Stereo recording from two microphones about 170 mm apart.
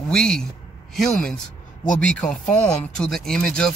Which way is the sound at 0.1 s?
5° left (ahead or behind).